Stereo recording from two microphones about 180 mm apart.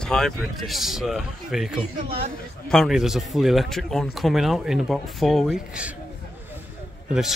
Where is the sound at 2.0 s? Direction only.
30° right (ahead or behind).